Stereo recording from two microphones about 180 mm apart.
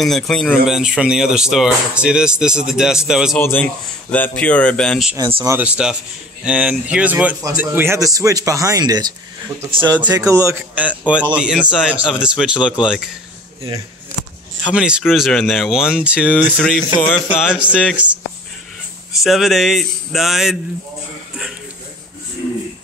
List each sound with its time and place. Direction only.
0.0 s speech: centre (ahead or behind)
3.3 s speech: 10° left (ahead or behind)
5.4 s a man's voice: 10° right (ahead or behind)
14.6 s a man's voice: 5° right (ahead or behind)